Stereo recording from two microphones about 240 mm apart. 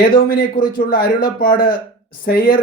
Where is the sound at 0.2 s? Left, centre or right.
Left.